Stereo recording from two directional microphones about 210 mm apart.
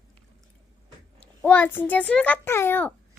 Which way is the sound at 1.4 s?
10° left (ahead or behind).